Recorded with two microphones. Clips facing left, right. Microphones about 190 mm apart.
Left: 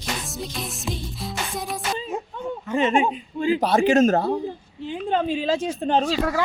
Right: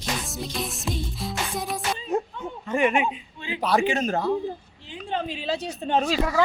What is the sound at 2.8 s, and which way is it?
Speech, 25° left (ahead or behind).